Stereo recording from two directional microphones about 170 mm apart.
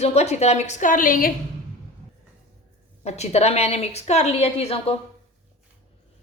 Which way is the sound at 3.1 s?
40° left (ahead or behind).